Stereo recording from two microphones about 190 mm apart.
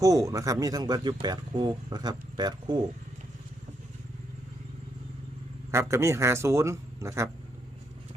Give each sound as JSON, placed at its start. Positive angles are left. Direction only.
{"t": 0.0, "sound": "speech", "side_deg": -15}
{"t": 5.7, "sound": "speech", "side_deg": -15}